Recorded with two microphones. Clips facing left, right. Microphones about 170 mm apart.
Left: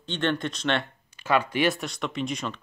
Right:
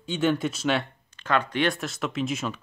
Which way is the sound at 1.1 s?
10° left (ahead or behind).